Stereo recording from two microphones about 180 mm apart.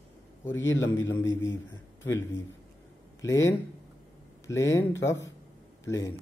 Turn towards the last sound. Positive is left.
turn(degrees=15)  # may be behind; listen again after turning